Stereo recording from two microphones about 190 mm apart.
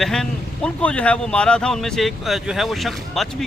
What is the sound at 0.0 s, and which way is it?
A man's voice, 5° left (ahead or behind).